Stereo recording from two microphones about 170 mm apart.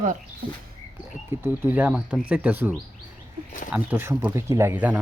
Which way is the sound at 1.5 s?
10° right (ahead or behind).